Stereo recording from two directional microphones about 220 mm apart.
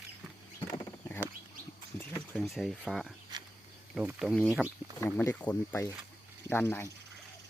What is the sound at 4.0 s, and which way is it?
Speech, 5° right (ahead or behind).